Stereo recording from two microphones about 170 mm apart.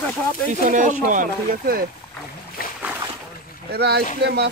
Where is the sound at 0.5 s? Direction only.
50° right (ahead or behind).